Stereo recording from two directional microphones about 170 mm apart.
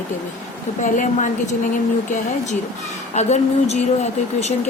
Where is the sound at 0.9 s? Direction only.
50° left (ahead or behind).